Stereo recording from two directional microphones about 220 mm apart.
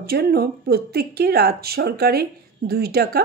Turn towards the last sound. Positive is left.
turn(degrees=-45)  # may be behind; listen again after turning